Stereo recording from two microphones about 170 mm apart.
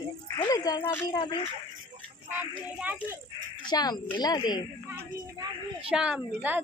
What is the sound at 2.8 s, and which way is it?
Speech, 10° right (ahead or behind).